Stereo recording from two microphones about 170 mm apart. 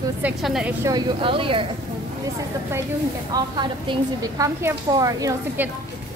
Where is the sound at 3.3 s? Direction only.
25° right (ahead or behind).